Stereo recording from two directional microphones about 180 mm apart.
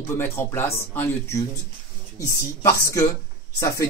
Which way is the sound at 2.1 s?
20° left (ahead or behind).